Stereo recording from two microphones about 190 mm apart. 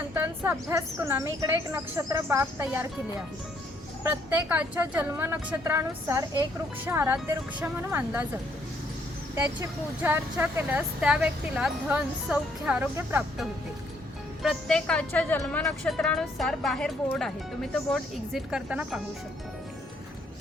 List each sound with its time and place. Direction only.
0.1 s speech: 10° right (ahead or behind)
4.0 s speech: 10° right (ahead or behind)
9.3 s speech: 10° right (ahead or behind)
14.4 s a woman's voice: 5° left (ahead or behind)